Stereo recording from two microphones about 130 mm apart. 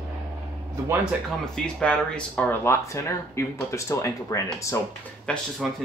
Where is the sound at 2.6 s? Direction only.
20° left (ahead or behind).